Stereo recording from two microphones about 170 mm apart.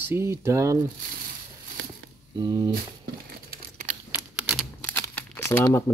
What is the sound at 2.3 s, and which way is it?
Speech, 25° right (ahead or behind).